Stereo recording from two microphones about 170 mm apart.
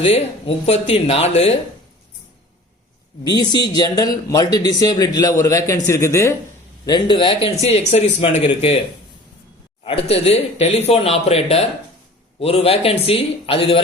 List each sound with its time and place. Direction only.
0.0 s speech: 35° left (ahead or behind)
3.2 s a man's voice: 25° left (ahead or behind)
6.8 s speech: 25° left (ahead or behind)
9.8 s speech: 35° left (ahead or behind)